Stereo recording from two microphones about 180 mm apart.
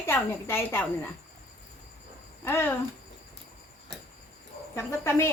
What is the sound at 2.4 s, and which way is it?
Speech, 10° left (ahead or behind).